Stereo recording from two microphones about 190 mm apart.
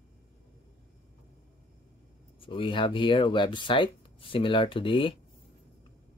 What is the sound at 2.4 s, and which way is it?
Speech, 25° left (ahead or behind).